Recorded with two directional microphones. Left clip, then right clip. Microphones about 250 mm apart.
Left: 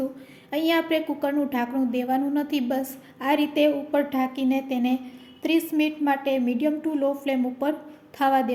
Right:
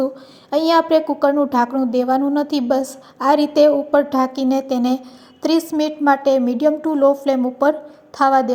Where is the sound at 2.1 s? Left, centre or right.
Centre.